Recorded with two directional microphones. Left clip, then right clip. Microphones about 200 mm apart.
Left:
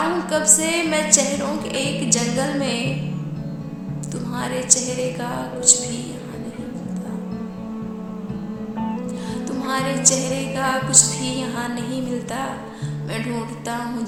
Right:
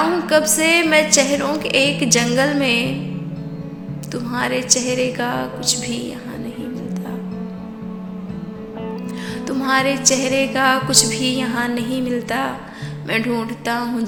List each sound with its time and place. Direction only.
0.0 s music: 15° right (ahead or behind)
1.1 s a woman's voice: 20° right (ahead or behind)
4.1 s a woman's voice: 20° right (ahead or behind)
9.6 s a woman's voice: 20° right (ahead or behind)
13.1 s music: 15° right (ahead or behind)